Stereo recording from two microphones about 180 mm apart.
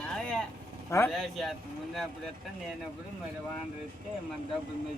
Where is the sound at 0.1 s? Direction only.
5° left (ahead or behind).